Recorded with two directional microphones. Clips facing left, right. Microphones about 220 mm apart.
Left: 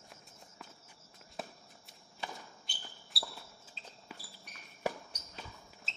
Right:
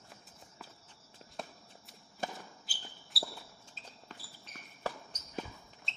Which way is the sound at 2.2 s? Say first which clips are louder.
Right 4 dB; 45° right (ahead or behind).